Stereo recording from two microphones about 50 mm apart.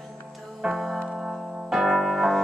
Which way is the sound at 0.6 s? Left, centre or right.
Centre.